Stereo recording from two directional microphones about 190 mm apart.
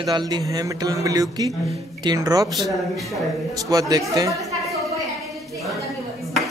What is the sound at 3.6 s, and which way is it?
Speech, 20° right (ahead or behind).